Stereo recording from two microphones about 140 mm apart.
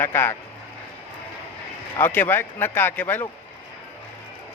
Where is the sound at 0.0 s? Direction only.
15° left (ahead or behind).